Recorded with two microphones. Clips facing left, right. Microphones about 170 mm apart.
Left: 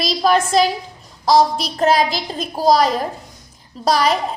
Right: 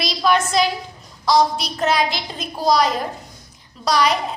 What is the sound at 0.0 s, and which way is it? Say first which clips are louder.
A woman's voice: left 3 dB; 40° left (ahead or behind).